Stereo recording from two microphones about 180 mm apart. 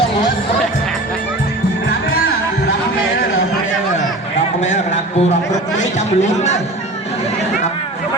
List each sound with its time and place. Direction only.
5.8 s speech: 40° left (ahead or behind)